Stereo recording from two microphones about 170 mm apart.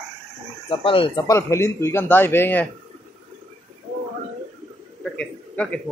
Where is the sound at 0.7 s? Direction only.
30° left (ahead or behind); by 2.7 s 10° left (ahead or behind).